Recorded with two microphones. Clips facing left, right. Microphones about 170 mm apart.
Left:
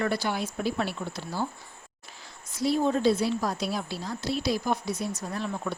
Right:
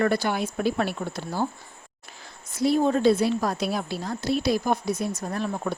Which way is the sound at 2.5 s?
55° right (ahead or behind).